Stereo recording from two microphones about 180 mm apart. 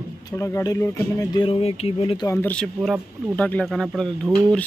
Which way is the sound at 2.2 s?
15° left (ahead or behind).